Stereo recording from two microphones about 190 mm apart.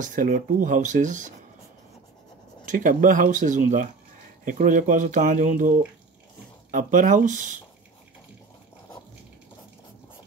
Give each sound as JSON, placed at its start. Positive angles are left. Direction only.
{"t": 0.0, "sound": "speech", "side_deg": -40}
{"t": 2.6, "sound": "speech", "side_deg": -45}